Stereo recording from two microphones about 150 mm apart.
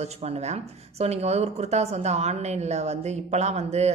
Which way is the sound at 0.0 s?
45° right (ahead or behind).